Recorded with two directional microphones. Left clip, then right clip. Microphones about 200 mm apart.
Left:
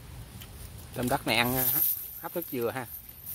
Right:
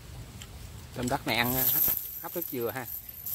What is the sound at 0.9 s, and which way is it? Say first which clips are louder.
Speech: left 2 dB; 15° left (ahead or behind).